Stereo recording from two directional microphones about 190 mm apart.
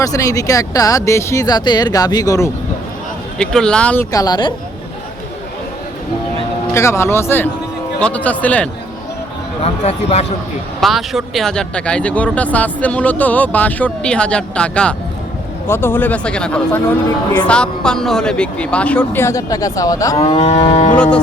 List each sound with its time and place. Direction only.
0.0 s speech: 20° left (ahead or behind)
3.3 s speech: 5° left (ahead or behind)
4.1 s a woman's voice: 20° left (ahead or behind)
6.7 s speech: 15° left (ahead or behind)
9.6 s speech: 35° left (ahead or behind)
10.8 s speech: centre (ahead or behind); by 20.2 s 15° left (ahead or behind)
20.2 s speech: 35° left (ahead or behind)
20.9 s speech: 5° left (ahead or behind)